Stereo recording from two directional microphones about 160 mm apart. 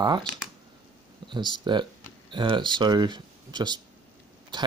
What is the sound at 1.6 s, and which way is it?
Speech, 30° right (ahead or behind).